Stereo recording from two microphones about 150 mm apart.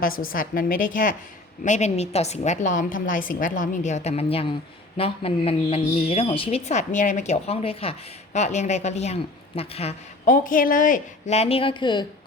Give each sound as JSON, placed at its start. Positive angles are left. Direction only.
{"t": 0.0, "sound": "a woman's voice", "side_deg": 70}
{"t": 1.6, "sound": "a woman's voice", "side_deg": 50}
{"t": 10.2, "sound": "speech", "side_deg": 65}